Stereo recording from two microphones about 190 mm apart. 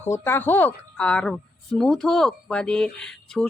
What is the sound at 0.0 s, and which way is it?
A woman's voice, 10° left (ahead or behind).